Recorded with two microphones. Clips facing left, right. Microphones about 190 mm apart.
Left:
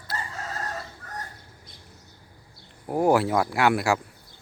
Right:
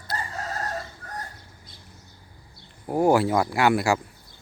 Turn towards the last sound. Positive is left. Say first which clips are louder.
# right 1 dB
turn(degrees=0)  # may be behind; listen again after turning